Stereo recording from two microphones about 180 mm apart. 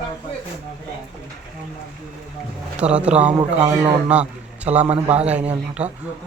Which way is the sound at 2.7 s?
5° right (ahead or behind).